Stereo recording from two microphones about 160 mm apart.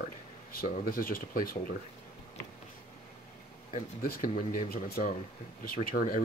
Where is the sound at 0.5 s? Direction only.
65° left (ahead or behind).